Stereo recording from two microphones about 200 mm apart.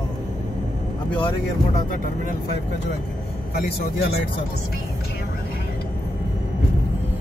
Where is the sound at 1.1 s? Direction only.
25° left (ahead or behind).